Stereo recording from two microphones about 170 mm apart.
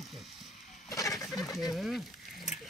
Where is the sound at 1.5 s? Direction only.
Centre (ahead or behind).